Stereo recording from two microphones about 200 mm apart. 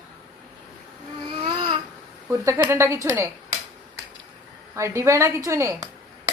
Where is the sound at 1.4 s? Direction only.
25° right (ahead or behind).